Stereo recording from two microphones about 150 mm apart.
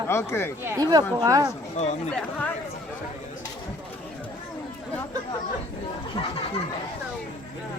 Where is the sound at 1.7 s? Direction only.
50° left (ahead or behind).